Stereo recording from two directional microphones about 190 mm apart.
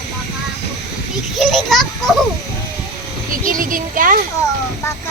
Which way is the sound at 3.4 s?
45° right (ahead or behind).